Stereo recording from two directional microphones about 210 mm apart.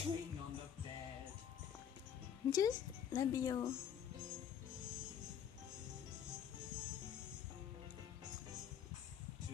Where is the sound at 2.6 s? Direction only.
15° left (ahead or behind).